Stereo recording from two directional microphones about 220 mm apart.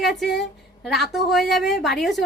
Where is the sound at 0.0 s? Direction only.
Centre (ahead or behind).